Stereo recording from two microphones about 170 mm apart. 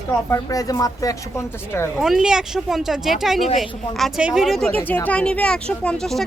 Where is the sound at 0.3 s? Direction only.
20° left (ahead or behind).